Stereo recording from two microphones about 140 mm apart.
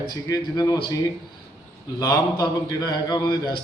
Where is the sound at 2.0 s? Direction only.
25° left (ahead or behind).